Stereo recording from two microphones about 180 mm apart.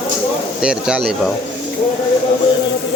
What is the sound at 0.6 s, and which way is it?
Speech, 5° right (ahead or behind).